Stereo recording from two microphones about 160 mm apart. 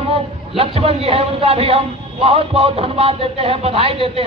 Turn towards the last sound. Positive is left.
turn(degrees=-40)  # may be behind; listen again after turning